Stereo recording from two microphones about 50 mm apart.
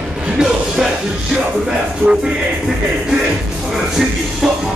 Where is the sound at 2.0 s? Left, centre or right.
Centre.